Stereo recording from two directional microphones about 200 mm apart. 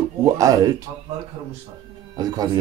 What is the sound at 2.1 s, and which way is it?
Speech, 20° right (ahead or behind).